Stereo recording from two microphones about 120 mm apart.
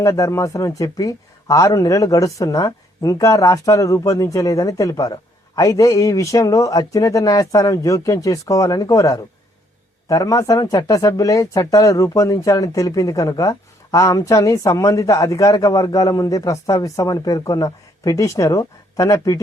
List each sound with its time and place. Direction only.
0.0 s speech: 25° left (ahead or behind)